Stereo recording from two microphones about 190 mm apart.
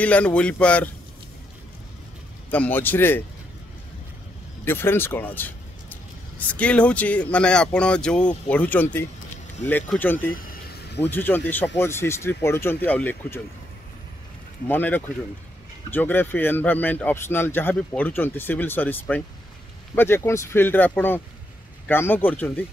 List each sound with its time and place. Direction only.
0.0 s speech: 5° left (ahead or behind)
2.5 s speech: 10° left (ahead or behind)
4.6 s speech: 10° left (ahead or behind)
10.3 s vehicle: 55° left (ahead or behind)
11.0 s speech: 10° left (ahead or behind)
14.7 s speech: 10° left (ahead or behind)